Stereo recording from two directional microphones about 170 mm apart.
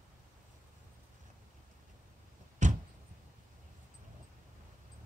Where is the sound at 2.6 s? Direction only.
45° right (ahead or behind).